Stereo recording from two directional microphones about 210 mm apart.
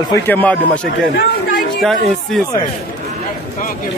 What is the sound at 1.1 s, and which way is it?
Speech, 45° left (ahead or behind).